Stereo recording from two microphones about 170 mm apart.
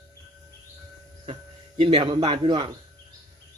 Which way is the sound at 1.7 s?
30° right (ahead or behind).